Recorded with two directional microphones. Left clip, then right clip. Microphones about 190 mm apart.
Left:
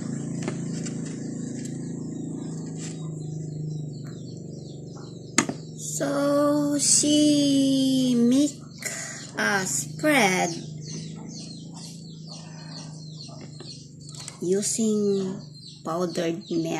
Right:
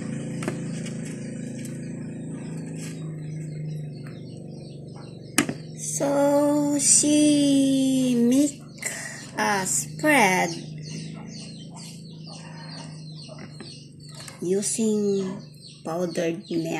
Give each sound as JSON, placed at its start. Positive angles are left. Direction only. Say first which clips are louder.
{"t": 5.5, "sound": "music", "louder": "right 1 dB", "side_deg": 0}
{"t": 14.4, "sound": "speech", "louder": "even", "side_deg": 0}